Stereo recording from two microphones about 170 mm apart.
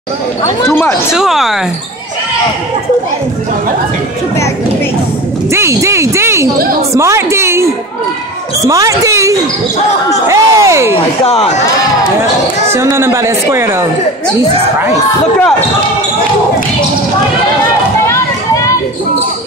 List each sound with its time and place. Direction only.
0.7 s speech: 10° left (ahead or behind)
1.1 s speech: centre (ahead or behind)
5.5 s speech: 15° right (ahead or behind)
11.2 s speech: 35° left (ahead or behind)
12.7 s speech: 15° right (ahead or behind)